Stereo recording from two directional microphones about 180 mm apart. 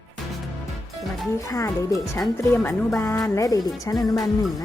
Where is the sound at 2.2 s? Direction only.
5° left (ahead or behind).